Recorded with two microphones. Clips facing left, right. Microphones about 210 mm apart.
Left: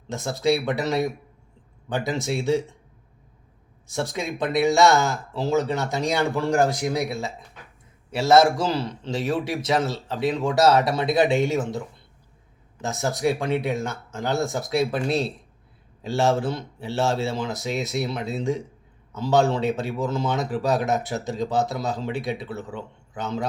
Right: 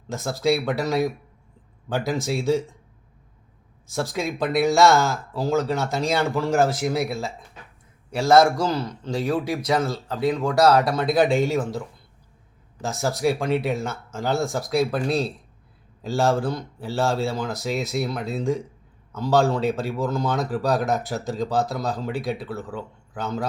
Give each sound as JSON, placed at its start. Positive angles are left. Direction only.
{"t": 0.1, "sound": "speech", "side_deg": 0}
{"t": 3.8, "sound": "speech", "side_deg": 0}
{"t": 8.3, "sound": "speech", "side_deg": 5}
{"t": 8.7, "sound": "speech", "side_deg": 30}
{"t": 9.6, "sound": "speech", "side_deg": 5}
{"t": 12.8, "sound": "speech", "side_deg": 0}